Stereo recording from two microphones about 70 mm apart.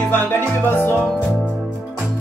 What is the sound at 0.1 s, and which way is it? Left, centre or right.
Music, left.